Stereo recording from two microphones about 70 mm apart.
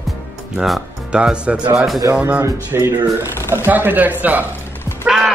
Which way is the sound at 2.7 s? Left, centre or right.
Right.